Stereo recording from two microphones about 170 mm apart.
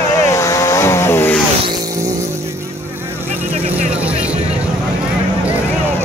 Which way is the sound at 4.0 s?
5° right (ahead or behind).